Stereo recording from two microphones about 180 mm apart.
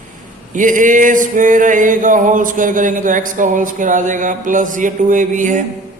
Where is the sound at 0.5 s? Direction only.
45° right (ahead or behind).